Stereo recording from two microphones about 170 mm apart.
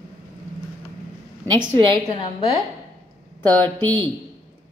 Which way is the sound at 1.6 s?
35° right (ahead or behind).